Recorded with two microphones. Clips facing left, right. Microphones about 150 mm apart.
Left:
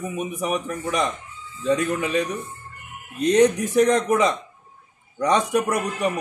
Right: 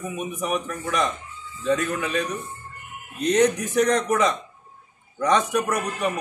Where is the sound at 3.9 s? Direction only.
20° left (ahead or behind).